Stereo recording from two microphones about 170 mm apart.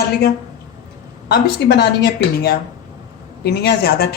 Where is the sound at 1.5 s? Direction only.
75° left (ahead or behind).